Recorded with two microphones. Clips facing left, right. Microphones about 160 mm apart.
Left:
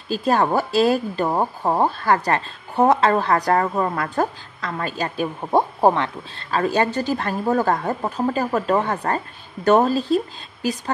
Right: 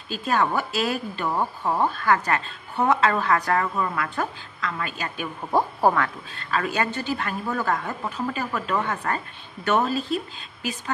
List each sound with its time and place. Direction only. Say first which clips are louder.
0.1 s speech: left 5 dB; 35° left (ahead or behind)